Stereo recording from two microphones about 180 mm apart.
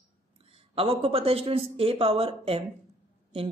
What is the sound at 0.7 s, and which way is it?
Speech, 30° right (ahead or behind).